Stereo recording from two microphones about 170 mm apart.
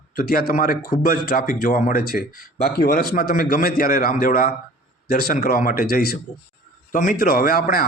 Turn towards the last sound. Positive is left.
turn(degrees=60)  # may be behind; listen again after turning